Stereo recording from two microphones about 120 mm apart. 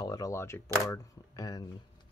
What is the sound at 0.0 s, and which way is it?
Speech, 30° left (ahead or behind).